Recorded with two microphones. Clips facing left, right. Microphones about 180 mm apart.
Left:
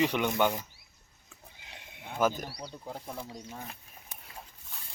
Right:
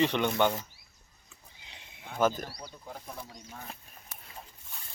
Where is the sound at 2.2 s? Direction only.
10° left (ahead or behind).